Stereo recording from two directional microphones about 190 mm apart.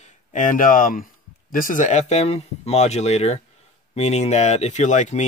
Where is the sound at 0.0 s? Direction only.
40° left (ahead or behind).